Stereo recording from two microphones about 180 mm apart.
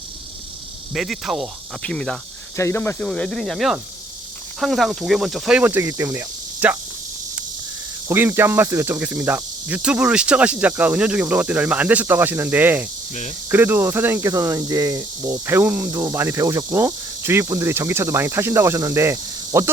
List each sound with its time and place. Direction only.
0.9 s speech: 5° right (ahead or behind)
8.0 s speech: 10° right (ahead or behind)